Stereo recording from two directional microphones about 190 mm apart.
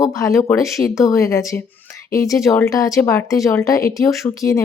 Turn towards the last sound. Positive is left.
turn(degrees=15)  # may be behind; listen again after turning